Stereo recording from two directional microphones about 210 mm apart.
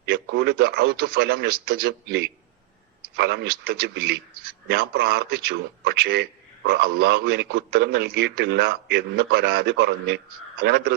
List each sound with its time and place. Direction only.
0.0 s a man's voice: 50° right (ahead or behind)